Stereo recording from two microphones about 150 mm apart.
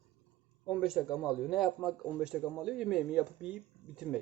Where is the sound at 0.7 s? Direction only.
5° right (ahead or behind).